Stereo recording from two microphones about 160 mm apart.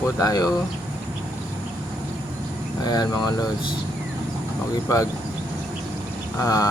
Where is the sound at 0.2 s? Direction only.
25° left (ahead or behind).